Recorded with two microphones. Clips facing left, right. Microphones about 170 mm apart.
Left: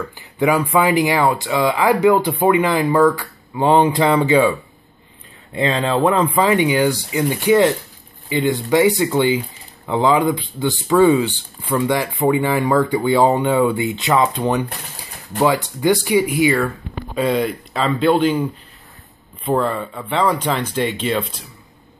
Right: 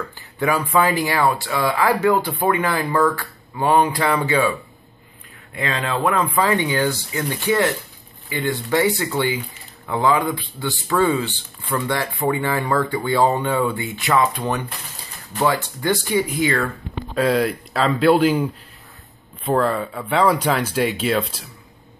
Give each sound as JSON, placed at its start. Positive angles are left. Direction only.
{"t": 0.4, "sound": "speech", "side_deg": 15}